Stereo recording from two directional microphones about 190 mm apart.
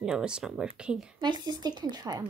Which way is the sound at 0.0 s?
5° right (ahead or behind).